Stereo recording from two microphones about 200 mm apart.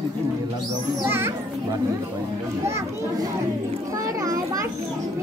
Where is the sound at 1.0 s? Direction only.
10° right (ahead or behind).